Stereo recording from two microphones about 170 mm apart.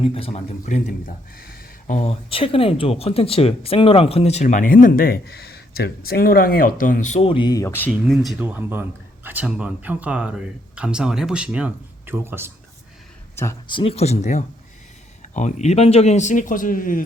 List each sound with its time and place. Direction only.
0.0 s speech: 35° left (ahead or behind); by 2.0 s 60° left (ahead or behind)
2.0 s speech: 35° left (ahead or behind); by 8.4 s centre (ahead or behind)
8.4 s speech: 10° right (ahead or behind)
13.3 s speech: 15° left (ahead or behind)
13.7 s speech: 30° left (ahead or behind); by 17.0 s 55° left (ahead or behind)